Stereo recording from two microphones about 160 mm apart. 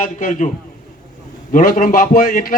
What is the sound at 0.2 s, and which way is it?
Speech, 50° left (ahead or behind).